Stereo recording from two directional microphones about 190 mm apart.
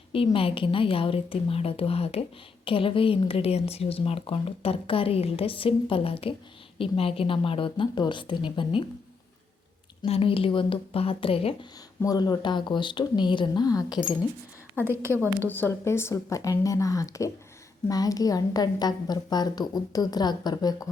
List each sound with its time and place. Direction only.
0.1 s a woman's voice: 30° left (ahead or behind)
10.0 s a woman's voice: 30° left (ahead or behind)
14.8 s a woman's voice: 10° right (ahead or behind)
15.4 s a woman's voice: 10° left (ahead or behind)